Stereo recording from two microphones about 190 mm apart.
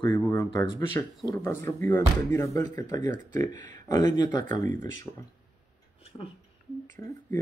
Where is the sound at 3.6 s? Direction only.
40° right (ahead or behind).